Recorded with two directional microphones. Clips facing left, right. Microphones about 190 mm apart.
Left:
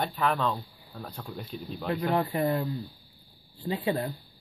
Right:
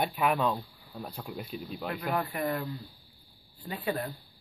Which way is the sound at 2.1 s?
30° left (ahead or behind).